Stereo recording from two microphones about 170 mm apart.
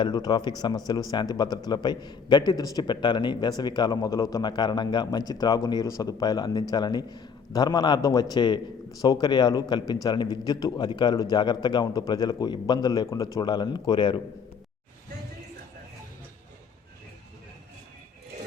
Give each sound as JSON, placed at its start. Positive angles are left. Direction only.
{"t": 0.0, "sound": "a man's voice", "side_deg": 25}